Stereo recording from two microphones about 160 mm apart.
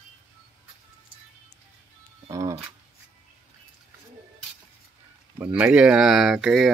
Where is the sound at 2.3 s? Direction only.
20° right (ahead or behind).